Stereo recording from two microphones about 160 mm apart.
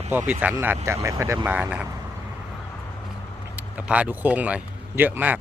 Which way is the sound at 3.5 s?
10° right (ahead or behind).